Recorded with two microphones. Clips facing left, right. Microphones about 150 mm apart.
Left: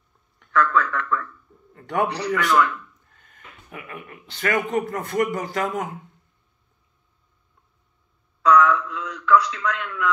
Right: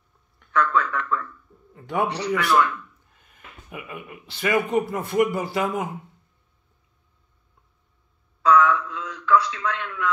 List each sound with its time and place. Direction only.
0.5 s a sound: 20° right (ahead or behind)
1.7 s speech: 5° right (ahead or behind)
2.2 s speech: 30° right (ahead or behind)
3.2 s speech: 5° right (ahead or behind)
8.4 s a man's voice: 25° right (ahead or behind)